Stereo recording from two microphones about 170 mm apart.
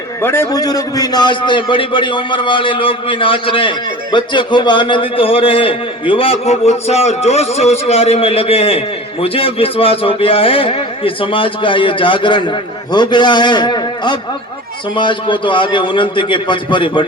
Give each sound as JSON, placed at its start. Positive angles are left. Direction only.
{"t": 0.2, "sound": "a man's voice", "side_deg": 15}